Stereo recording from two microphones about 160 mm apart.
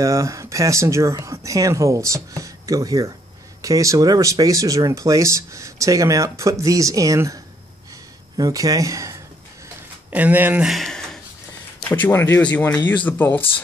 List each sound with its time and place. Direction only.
0.0 s speech: 20° right (ahead or behind); by 11.1 s 5° left (ahead or behind)
11.9 s speech: 15° left (ahead or behind)